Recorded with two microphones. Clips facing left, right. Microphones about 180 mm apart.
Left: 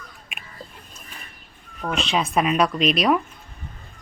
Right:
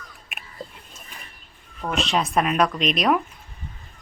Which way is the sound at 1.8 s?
Centre (ahead or behind).